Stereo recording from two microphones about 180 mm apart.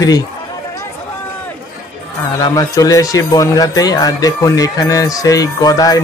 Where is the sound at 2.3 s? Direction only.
20° left (ahead or behind).